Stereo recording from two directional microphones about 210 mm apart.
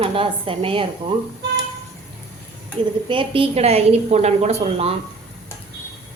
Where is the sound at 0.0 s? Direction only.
25° right (ahead or behind).